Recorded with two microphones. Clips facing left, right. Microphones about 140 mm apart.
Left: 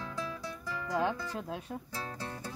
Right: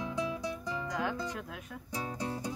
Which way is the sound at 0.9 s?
30° left (ahead or behind).